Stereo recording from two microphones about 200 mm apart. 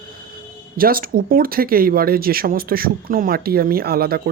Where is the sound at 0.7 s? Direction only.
45° right (ahead or behind).